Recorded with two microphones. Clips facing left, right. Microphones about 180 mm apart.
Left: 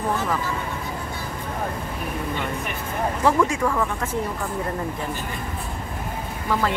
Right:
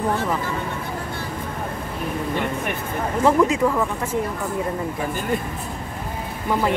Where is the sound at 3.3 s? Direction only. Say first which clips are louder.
Right 3 dB; 20° right (ahead or behind).